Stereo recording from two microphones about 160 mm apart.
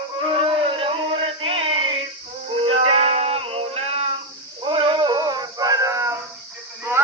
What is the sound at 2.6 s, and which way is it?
Music, 40° right (ahead or behind).